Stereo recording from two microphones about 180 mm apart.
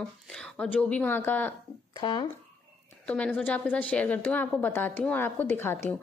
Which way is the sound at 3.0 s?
5° left (ahead or behind).